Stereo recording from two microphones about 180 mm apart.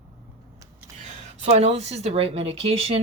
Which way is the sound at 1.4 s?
40° right (ahead or behind).